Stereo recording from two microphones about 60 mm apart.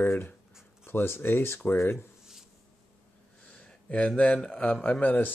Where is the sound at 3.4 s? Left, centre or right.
Centre.